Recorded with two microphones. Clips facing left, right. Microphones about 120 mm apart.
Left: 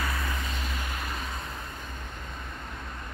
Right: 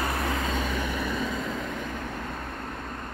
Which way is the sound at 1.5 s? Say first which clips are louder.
Right 8 dB; 90° right.